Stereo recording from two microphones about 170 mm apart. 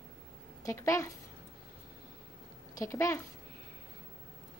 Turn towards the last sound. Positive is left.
turn(degrees=15)  # may be behind; listen again after turning